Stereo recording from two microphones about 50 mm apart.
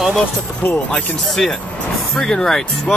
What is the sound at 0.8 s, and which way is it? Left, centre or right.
Speech, left.